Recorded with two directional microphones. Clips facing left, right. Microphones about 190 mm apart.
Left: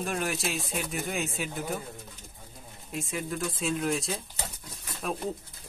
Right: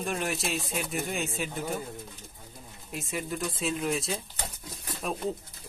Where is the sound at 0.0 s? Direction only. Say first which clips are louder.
Even; centre (ahead or behind).